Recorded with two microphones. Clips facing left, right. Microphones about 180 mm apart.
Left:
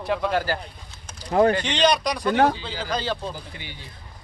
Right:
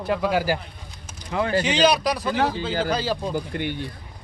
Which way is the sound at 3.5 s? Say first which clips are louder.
Right 13 dB; 60° right (ahead or behind).